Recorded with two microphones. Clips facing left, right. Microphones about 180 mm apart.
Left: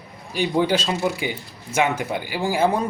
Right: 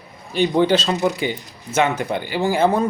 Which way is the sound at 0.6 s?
10° left (ahead or behind).